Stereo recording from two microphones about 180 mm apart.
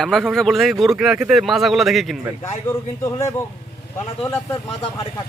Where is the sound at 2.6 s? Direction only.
15° left (ahead or behind).